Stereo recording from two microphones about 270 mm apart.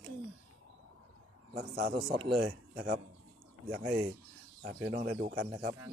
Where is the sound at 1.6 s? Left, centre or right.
Right.